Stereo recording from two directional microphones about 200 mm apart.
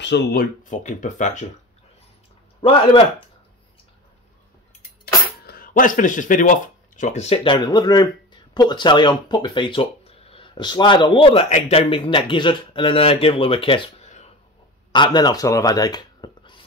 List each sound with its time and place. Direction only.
0.0 s speech: 60° left (ahead or behind)
0.7 s speech: 40° left (ahead or behind)
2.6 s speech: 25° left (ahead or behind)
5.4 s speech: 50° left (ahead or behind)
14.9 s speech: 20° left (ahead or behind)